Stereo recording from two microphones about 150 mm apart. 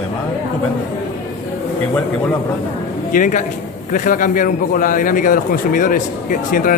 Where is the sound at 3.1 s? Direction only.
60° left (ahead or behind).